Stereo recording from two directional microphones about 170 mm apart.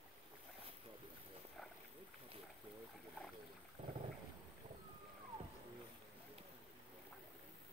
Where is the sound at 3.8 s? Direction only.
35° right (ahead or behind).